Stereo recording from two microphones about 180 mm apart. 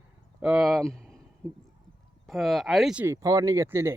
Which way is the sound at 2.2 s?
Centre (ahead or behind).